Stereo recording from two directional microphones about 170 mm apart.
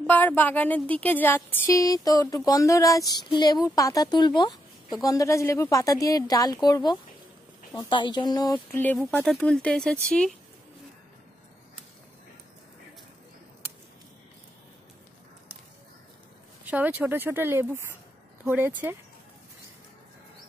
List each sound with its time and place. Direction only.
0.0 s a woman's voice: 10° left (ahead or behind)
8.7 s speech: 10° left (ahead or behind)
16.6 s speech: 10° right (ahead or behind)